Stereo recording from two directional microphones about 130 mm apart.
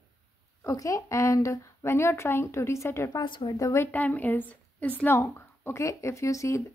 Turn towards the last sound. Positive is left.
turn(degrees=25)  # may be behind; listen again after turning